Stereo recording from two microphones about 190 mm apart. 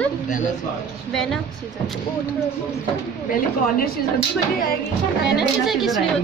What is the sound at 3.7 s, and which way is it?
Speech, 50° left (ahead or behind).